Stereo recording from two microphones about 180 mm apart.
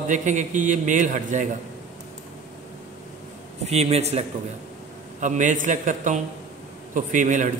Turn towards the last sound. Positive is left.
turn(degrees=-45)  # may be behind; listen again after turning